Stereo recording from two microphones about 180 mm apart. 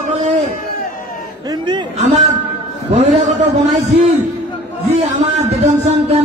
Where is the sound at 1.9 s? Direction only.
40° right (ahead or behind).